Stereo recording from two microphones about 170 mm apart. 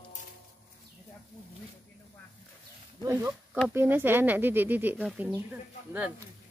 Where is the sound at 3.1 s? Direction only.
15° right (ahead or behind).